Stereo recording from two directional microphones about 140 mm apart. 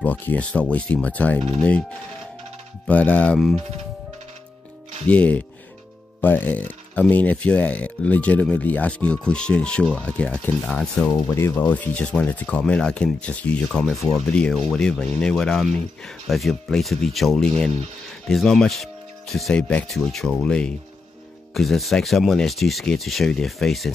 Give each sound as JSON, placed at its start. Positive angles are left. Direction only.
{"t": 0.0, "sound": "speech", "side_deg": 10}
{"t": 2.9, "sound": "speech", "side_deg": 10}
{"t": 5.0, "sound": "speech", "side_deg": 10}